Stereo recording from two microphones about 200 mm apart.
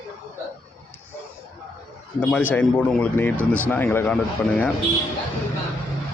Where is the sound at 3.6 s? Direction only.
10° left (ahead or behind).